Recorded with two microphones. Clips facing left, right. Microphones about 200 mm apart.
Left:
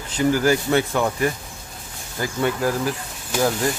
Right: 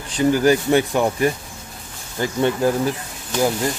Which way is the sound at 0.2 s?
20° right (ahead or behind).